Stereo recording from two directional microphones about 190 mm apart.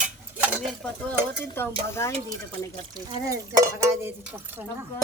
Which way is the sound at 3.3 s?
15° right (ahead or behind).